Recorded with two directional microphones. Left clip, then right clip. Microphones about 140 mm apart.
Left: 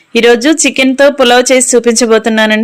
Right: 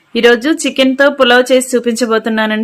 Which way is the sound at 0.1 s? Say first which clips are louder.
Left 3 dB; 25° left (ahead or behind).